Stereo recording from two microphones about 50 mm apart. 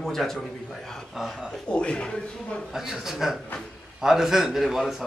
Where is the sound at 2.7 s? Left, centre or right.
Centre.